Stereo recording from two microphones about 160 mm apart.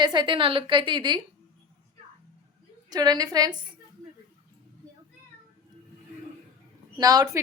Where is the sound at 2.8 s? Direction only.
25° right (ahead or behind).